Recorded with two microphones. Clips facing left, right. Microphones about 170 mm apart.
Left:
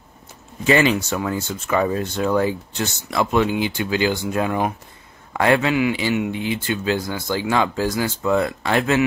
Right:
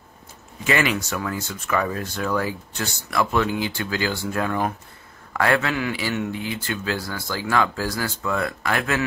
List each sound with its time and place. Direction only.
0.7 s speech: 30° left (ahead or behind)